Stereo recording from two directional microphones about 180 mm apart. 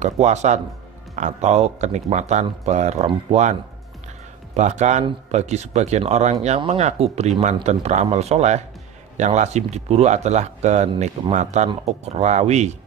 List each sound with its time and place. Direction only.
0.0 s speech: 40° right (ahead or behind)
4.6 s speech: 40° right (ahead or behind)